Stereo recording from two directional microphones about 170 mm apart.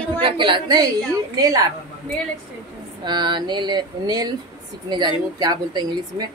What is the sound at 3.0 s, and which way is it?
Speech, 25° right (ahead or behind).